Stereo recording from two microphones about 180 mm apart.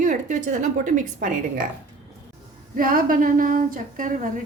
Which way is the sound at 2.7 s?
50° right (ahead or behind).